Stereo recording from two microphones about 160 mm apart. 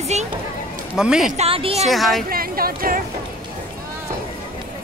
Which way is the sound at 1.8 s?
Centre (ahead or behind).